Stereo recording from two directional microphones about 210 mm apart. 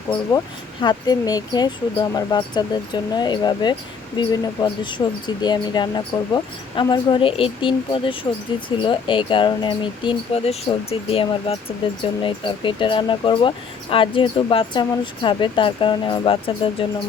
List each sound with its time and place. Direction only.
0.1 s speech: 20° left (ahead or behind)